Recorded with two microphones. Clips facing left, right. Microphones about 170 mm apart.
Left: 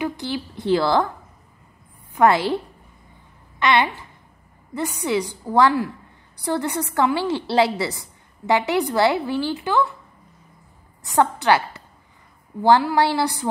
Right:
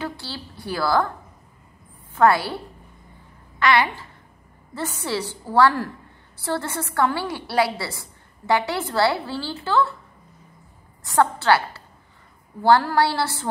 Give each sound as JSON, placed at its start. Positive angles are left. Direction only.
{"t": 0.0, "sound": "a woman's voice", "side_deg": 20}
{"t": 2.1, "sound": "a woman's voice", "side_deg": 20}
{"t": 11.1, "sound": "a woman's voice", "side_deg": 20}